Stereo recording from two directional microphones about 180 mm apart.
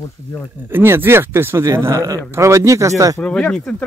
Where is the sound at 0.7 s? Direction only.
10° right (ahead or behind).